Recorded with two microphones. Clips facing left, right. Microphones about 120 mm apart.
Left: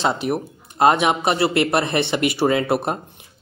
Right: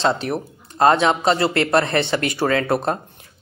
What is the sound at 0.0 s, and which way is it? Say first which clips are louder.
Speech: right 1 dB; 15° left (ahead or behind).